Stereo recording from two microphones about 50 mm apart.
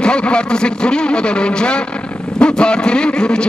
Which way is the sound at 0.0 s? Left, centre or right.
Centre.